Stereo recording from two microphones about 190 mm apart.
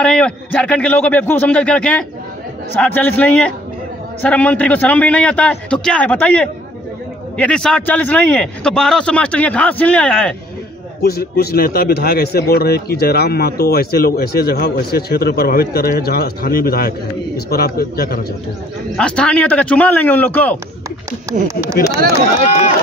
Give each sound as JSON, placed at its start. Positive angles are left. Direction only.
{"t": 0.0, "sound": "a man's voice", "side_deg": 5}
{"t": 11.0, "sound": "a man's voice", "side_deg": 55}
{"t": 18.9, "sound": "a man's voice", "side_deg": 5}